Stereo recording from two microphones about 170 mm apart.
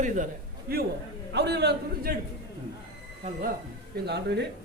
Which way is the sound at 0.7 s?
60° right (ahead or behind).